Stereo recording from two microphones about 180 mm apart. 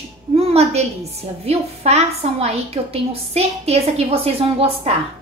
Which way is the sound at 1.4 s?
35° right (ahead or behind).